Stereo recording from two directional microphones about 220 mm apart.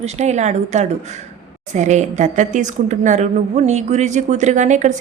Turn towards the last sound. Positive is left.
turn(degrees=-35)  # may be behind; listen again after turning